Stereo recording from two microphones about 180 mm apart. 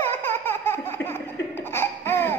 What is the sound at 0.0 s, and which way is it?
Laughter, 15° left (ahead or behind).